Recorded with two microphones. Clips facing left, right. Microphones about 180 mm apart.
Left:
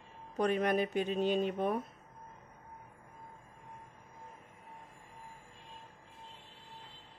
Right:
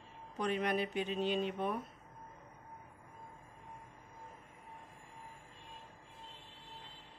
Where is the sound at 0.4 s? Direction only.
45° left (ahead or behind).